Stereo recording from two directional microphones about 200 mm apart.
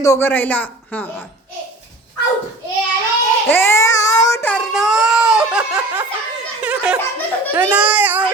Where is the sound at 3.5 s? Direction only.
10° left (ahead or behind); by 6.0 s 5° right (ahead or behind).